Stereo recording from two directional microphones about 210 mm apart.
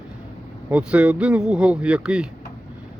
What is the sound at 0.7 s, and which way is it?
Speech, 5° right (ahead or behind).